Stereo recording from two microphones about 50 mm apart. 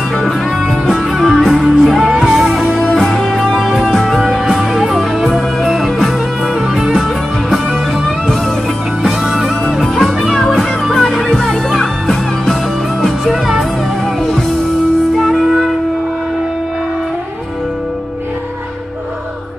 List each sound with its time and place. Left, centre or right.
0.2 s music: centre
2.9 s music: centre
9.0 s music: centre
13.2 s music: centre
15.1 s music: centre